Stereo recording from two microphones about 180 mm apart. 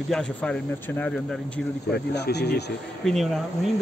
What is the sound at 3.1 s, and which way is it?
Speech, centre (ahead or behind).